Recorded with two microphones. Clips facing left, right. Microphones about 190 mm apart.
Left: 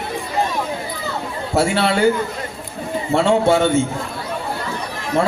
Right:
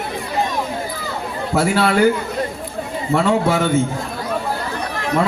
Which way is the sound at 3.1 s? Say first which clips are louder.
Left 2 dB; 30° left (ahead or behind).